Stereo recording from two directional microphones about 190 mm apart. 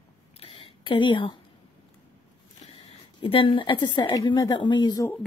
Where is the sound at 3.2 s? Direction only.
30° left (ahead or behind).